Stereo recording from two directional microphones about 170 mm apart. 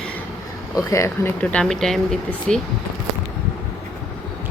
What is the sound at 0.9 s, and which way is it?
Speech, 15° left (ahead or behind).